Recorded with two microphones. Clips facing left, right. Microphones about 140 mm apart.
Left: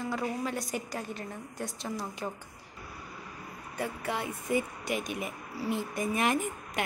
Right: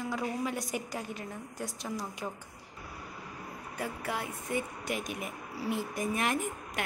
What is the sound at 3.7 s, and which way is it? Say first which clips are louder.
A woman's voice: left 2 dB; 5° right (ahead or behind).